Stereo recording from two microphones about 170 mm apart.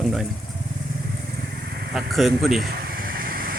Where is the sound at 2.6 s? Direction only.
60° right (ahead or behind).